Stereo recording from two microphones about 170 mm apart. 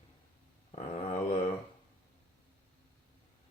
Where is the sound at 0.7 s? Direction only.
40° left (ahead or behind).